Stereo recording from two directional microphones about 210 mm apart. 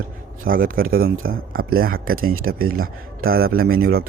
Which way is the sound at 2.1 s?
85° right.